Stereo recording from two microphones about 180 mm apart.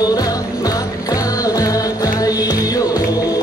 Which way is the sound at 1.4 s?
20° left (ahead or behind).